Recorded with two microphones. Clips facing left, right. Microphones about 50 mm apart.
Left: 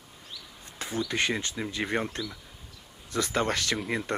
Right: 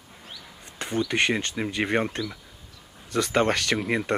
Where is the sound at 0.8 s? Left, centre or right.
Right.